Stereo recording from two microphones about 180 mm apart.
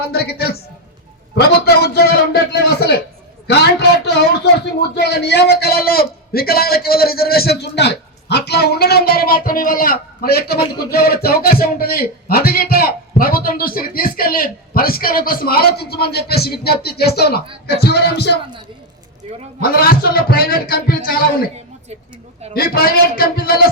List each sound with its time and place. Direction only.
0.0 s speech: 60° left (ahead or behind)
19.2 s a man's voice: 35° right (ahead or behind)
19.7 s speech: 55° left (ahead or behind)
22.5 s speech: 55° left (ahead or behind)